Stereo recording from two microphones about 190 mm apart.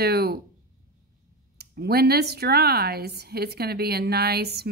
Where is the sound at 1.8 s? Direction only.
55° right (ahead or behind).